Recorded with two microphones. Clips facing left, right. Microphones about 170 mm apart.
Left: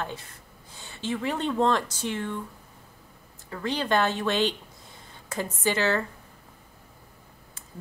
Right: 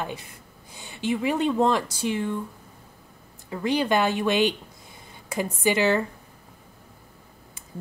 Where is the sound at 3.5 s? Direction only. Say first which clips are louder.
Right 3 dB; 10° right (ahead or behind).